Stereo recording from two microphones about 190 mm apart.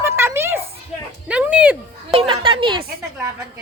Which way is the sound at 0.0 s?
15° right (ahead or behind).